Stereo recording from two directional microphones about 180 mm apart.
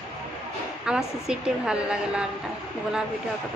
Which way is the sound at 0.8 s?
5° right (ahead or behind).